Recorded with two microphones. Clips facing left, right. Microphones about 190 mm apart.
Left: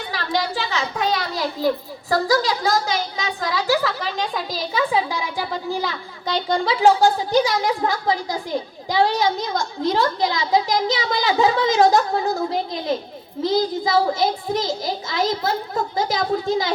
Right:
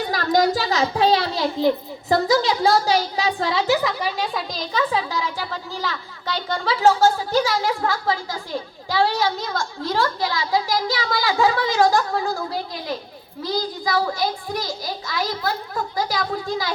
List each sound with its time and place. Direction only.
0.0 s a child's voice: 40° right (ahead or behind); by 3.9 s 25° right (ahead or behind)
4.0 s a woman's voice: 5° right (ahead or behind)
4.5 s a woman's voice: 10° left (ahead or behind)